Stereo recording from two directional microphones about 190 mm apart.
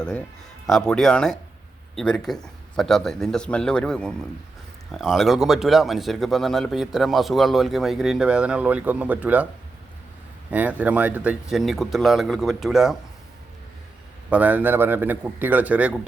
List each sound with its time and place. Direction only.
0.7 s speech: 5° left (ahead or behind)
10.5 s speech: 10° right (ahead or behind)
14.3 s a man's voice: 10° right (ahead or behind)